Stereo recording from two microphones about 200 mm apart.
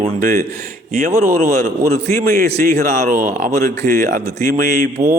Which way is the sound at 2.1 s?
50° right (ahead or behind).